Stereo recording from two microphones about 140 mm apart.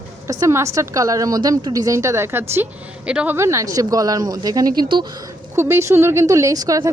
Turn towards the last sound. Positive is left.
turn(degrees=-25)  # may be behind; listen again after turning